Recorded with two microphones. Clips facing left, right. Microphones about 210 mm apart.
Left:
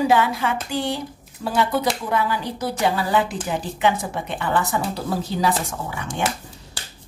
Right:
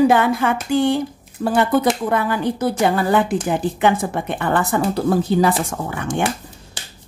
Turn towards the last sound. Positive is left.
turn(degrees=-55)  # may be behind; listen again after turning